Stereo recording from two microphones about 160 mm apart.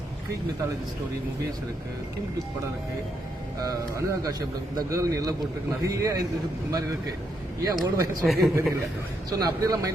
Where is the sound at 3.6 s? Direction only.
20° right (ahead or behind).